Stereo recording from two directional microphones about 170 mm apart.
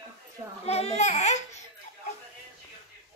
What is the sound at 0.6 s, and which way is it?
Speech, 40° left (ahead or behind).